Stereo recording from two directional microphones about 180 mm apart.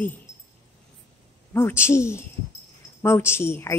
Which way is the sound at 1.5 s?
15° left (ahead or behind).